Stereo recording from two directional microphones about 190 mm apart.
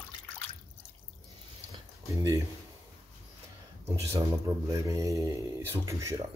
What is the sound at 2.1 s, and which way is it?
Speech, 15° right (ahead or behind).